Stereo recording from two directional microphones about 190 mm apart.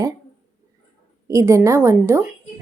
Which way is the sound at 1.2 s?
15° right (ahead or behind).